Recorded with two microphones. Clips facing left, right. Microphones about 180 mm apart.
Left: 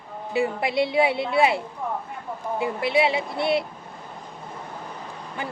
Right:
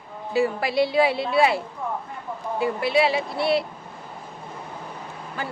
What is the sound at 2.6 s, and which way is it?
A woman's voice, 20° left (ahead or behind).